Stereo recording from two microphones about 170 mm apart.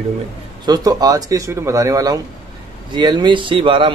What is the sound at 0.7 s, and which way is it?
Speech, 20° right (ahead or behind).